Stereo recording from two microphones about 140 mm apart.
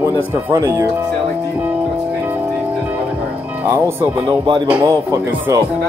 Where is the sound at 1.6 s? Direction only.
10° right (ahead or behind).